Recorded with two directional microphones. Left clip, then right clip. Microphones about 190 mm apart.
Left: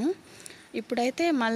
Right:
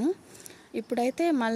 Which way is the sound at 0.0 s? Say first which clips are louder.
Even; 5° right (ahead or behind).